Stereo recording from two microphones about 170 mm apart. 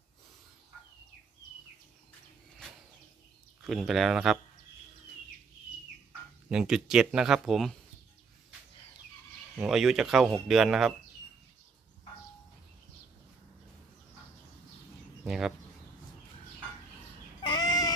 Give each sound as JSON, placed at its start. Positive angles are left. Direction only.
{"t": 3.6, "sound": "speech", "side_deg": 0}
{"t": 6.5, "sound": "speech", "side_deg": -5}
{"t": 9.6, "sound": "speech", "side_deg": -5}
{"t": 15.2, "sound": "bird", "side_deg": 0}
{"t": 17.4, "sound": "a sound", "side_deg": 25}